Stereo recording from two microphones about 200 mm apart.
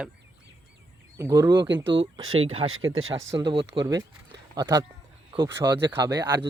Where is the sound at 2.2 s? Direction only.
90° right; by 3.3 s 70° right (ahead or behind).